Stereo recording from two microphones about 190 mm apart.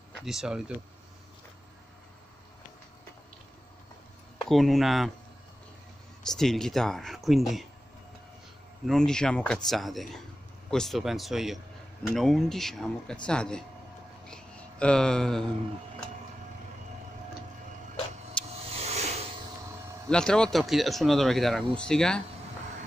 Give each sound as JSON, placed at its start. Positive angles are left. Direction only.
{"t": 0.1, "sound": "speech", "side_deg": 0}
{"t": 4.5, "sound": "speech", "side_deg": 0}
{"t": 6.2, "sound": "speech", "side_deg": 0}
{"t": 8.8, "sound": "speech", "side_deg": 5}
{"t": 14.2, "sound": "a sound", "side_deg": 5}
{"t": 18.4, "sound": "vehicle", "side_deg": 5}
{"t": 18.8, "sound": "a sound", "side_deg": -35}
{"t": 20.1, "sound": "speech", "side_deg": 5}